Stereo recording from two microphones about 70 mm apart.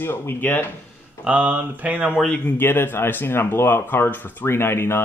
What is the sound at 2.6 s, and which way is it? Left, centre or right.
Speech, left.